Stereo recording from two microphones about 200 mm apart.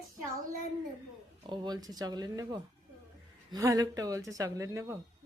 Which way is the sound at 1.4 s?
20° right (ahead or behind).